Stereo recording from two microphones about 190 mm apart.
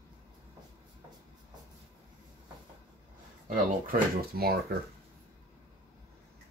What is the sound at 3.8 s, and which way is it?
Speech, 55° right (ahead or behind).